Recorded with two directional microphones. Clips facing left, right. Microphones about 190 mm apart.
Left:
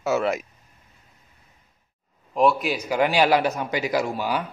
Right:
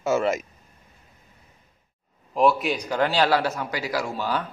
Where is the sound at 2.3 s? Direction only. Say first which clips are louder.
Even; centre (ahead or behind).